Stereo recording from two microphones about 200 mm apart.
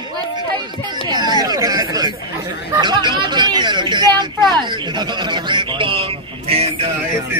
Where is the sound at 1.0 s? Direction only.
20° right (ahead or behind).